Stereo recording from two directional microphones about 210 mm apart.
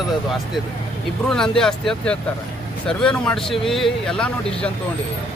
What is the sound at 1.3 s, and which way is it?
Speech, centre (ahead or behind).